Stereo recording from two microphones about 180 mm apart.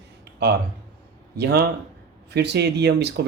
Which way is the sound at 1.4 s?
65° right (ahead or behind).